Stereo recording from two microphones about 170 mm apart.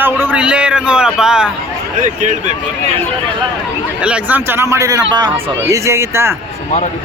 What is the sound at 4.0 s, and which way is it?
Speech, 5° right (ahead or behind).